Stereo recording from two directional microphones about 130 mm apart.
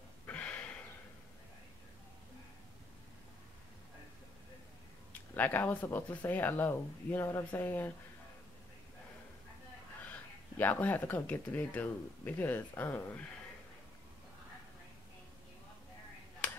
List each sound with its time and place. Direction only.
0.3 s a sound: 10° left (ahead or behind)
5.3 s speech: 15° left (ahead or behind)
10.6 s speech: 15° left (ahead or behind)